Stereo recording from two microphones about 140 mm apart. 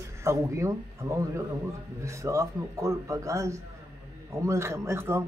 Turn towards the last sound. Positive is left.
turn(degrees=-20)  # may be behind; listen again after turning